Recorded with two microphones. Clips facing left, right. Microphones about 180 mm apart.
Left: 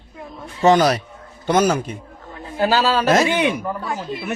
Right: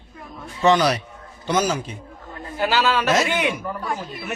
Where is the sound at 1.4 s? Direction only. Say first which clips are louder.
Left 5 dB; 55° left (ahead or behind).